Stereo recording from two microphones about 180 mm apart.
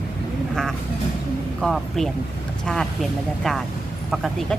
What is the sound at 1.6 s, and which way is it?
Speech, centre (ahead or behind).